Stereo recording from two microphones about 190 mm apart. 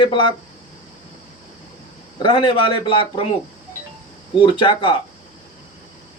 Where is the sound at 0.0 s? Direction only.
25° left (ahead or behind).